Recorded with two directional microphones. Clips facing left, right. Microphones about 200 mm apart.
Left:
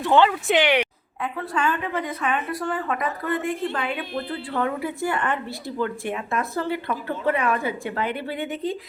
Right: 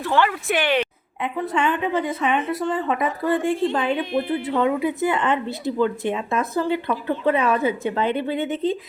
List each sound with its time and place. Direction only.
0.0 s speech: 20° left (ahead or behind)
1.2 s speech: 20° right (ahead or behind)
3.9 s speech: 15° right (ahead or behind)